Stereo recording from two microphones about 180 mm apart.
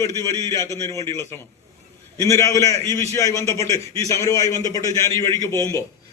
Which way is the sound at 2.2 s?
15° left (ahead or behind).